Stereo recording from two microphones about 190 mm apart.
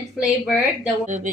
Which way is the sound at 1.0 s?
40° right (ahead or behind).